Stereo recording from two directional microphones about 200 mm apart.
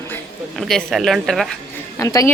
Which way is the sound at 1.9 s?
15° left (ahead or behind).